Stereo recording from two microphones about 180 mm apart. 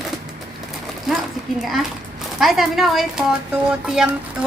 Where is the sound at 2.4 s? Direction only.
Centre (ahead or behind).